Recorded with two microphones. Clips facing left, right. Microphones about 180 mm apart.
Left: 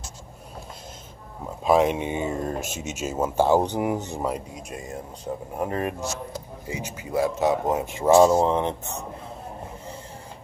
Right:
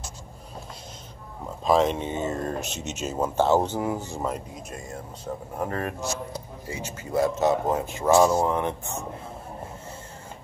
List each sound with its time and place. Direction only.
1.6 s speech: 10° left (ahead or behind)